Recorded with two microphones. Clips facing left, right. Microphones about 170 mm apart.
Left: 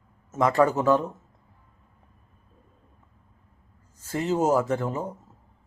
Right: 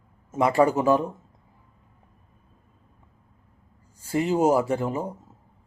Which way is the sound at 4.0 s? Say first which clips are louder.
Right 3 dB; 10° right (ahead or behind).